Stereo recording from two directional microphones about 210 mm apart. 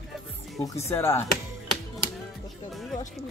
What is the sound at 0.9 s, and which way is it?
Speech, 10° left (ahead or behind).